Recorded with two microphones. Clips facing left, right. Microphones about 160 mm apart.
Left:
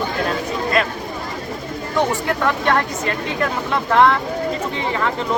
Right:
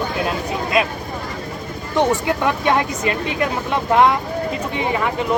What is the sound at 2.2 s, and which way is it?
Speech, 15° right (ahead or behind).